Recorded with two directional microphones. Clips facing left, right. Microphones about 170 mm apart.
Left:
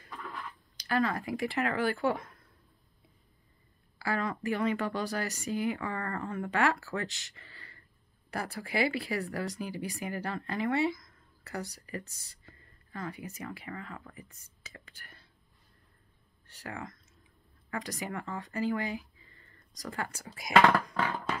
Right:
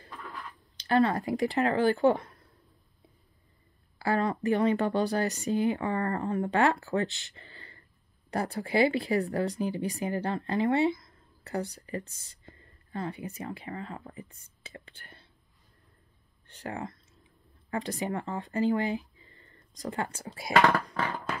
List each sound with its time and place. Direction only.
0.7 s speech: 30° right (ahead or behind)
4.0 s speech: 30° right (ahead or behind)
16.5 s speech: 30° right (ahead or behind)